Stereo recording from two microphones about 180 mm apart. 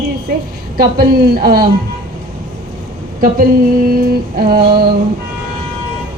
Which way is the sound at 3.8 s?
55° right (ahead or behind).